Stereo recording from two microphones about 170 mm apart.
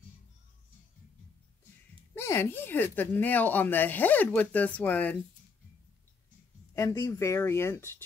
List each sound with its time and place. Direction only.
2.1 s speech: 15° left (ahead or behind)
6.7 s speech: 20° left (ahead or behind)